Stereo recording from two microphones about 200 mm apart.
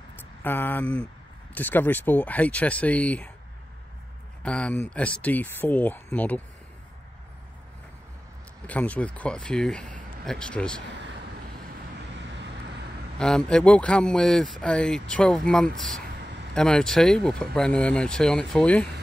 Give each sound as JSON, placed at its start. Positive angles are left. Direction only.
{"t": 0.4, "sound": "speech", "side_deg": 10}
{"t": 4.4, "sound": "a man's voice", "side_deg": 5}
{"t": 8.6, "sound": "speech", "side_deg": 5}
{"t": 12.2, "sound": "vehicle", "side_deg": -60}
{"t": 13.2, "sound": "speech", "side_deg": 5}
{"t": 15.7, "sound": "speech", "side_deg": -40}
{"t": 16.5, "sound": "speech", "side_deg": 5}